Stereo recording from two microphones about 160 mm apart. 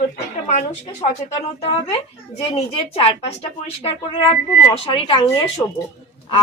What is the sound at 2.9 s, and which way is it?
Speech, 40° left (ahead or behind).